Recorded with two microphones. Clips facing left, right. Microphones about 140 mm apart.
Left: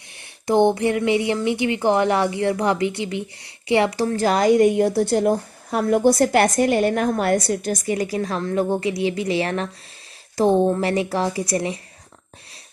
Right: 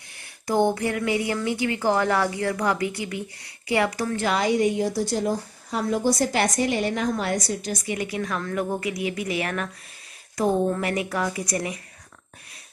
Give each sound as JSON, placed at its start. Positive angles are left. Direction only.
{"t": 0.5, "sound": "speech", "side_deg": 25}